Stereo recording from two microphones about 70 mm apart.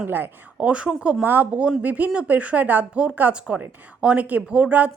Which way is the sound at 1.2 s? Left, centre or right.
Right.